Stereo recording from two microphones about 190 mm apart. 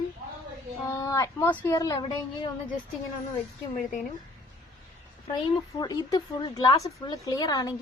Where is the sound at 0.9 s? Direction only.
15° left (ahead or behind).